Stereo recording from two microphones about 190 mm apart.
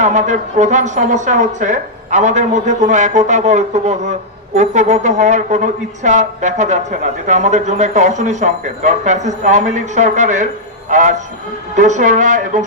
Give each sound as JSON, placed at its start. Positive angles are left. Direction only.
{"t": 0.0, "sound": "speech", "side_deg": -40}